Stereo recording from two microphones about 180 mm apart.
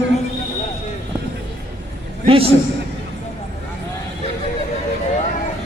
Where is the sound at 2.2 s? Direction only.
30° right (ahead or behind).